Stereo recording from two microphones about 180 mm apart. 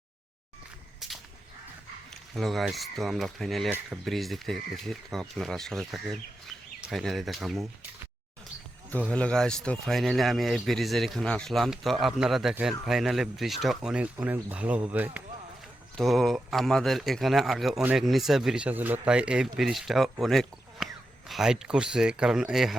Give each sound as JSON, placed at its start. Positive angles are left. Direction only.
{"t": 0.9, "sound": "a sound", "side_deg": 0}
{"t": 2.3, "sound": "speech", "side_deg": 0}
{"t": 9.0, "sound": "speech", "side_deg": 5}